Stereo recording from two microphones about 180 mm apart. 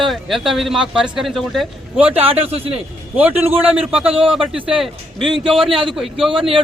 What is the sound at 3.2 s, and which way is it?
Speech, 10° right (ahead or behind).